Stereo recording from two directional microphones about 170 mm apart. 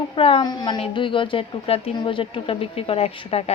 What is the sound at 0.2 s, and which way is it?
A woman's voice, 30° left (ahead or behind).